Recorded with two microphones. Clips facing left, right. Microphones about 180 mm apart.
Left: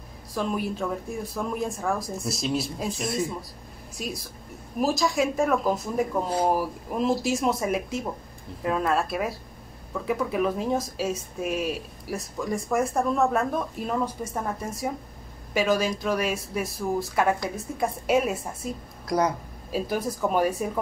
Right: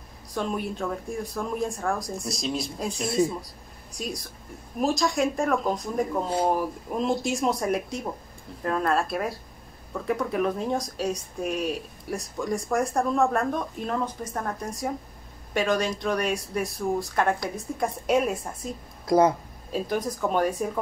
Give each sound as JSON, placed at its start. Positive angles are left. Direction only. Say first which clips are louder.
{"t": 0.3, "sound": "speech", "louder": "left 1 dB", "side_deg": 0}
{"t": 19.0, "sound": "speech", "louder": "right 5 dB", "side_deg": -25}
{"t": 19.7, "sound": "speech", "louder": "even", "side_deg": 5}